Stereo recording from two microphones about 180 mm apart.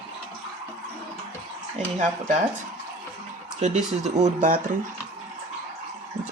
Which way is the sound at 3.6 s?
40° right (ahead or behind).